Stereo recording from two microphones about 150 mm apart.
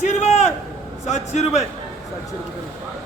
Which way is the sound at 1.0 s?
50° left (ahead or behind).